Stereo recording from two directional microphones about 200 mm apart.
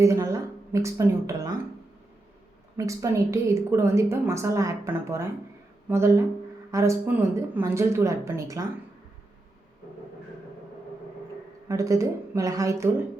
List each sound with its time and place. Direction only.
0.0 s a woman's voice: 15° right (ahead or behind)
2.7 s a woman's voice: 15° right (ahead or behind)
11.7 s a woman's voice: 15° right (ahead or behind)